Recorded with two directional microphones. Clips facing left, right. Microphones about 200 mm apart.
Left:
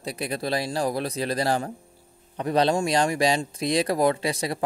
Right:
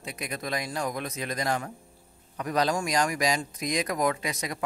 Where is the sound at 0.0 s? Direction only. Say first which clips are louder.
Left 6 dB; 35° left (ahead or behind).